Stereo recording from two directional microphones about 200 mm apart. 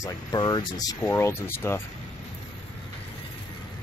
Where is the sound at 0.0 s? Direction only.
20° left (ahead or behind).